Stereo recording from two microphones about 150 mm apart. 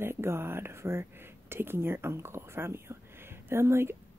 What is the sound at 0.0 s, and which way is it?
Speech, 15° right (ahead or behind).